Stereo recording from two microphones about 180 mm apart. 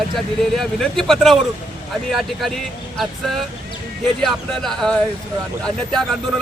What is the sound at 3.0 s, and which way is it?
Speech, centre (ahead or behind).